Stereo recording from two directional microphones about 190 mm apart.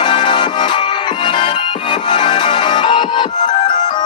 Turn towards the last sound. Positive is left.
turn(degrees=25)  # may be behind; listen again after turning